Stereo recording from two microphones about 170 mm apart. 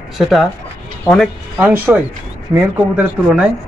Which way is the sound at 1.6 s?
10° right (ahead or behind).